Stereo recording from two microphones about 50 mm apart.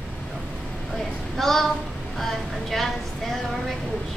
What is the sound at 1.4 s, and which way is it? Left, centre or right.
Speech, centre.